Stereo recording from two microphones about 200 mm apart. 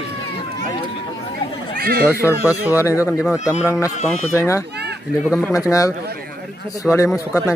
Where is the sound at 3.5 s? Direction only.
5° right (ahead or behind).